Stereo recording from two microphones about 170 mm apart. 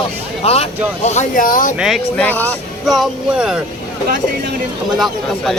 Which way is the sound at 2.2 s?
10° left (ahead or behind).